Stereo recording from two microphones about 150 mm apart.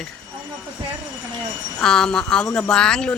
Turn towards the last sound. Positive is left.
turn(degrees=5)  # may be behind; listen again after turning